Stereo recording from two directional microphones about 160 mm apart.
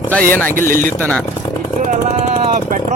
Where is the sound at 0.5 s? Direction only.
60° right (ahead or behind).